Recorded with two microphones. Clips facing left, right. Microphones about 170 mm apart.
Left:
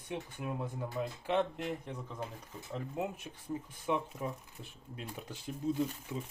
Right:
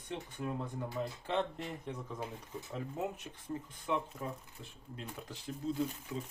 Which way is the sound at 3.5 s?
15° left (ahead or behind).